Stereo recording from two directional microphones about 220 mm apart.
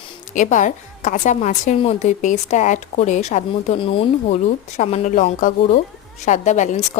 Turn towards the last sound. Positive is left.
turn(degrees=30)  # may be behind; listen again after turning